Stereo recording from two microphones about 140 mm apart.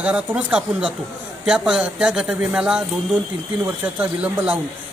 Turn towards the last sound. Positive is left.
turn(degrees=-10)  # may be behind; listen again after turning